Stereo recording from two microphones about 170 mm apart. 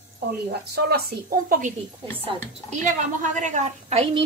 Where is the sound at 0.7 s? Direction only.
70° right (ahead or behind).